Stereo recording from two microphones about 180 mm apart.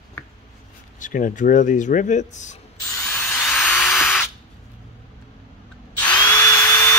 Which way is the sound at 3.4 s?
5° left (ahead or behind).